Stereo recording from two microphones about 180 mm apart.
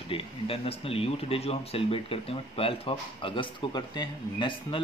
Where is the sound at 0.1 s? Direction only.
30° left (ahead or behind).